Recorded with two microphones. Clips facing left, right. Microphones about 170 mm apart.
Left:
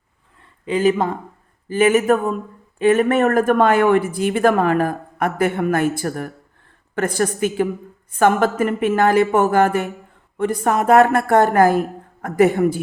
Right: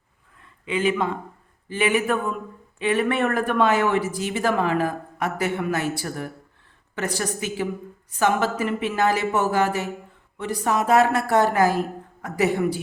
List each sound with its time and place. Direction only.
0.6 s speech: 40° left (ahead or behind)